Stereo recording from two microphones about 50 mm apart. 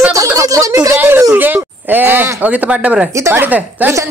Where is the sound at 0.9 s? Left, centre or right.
Right.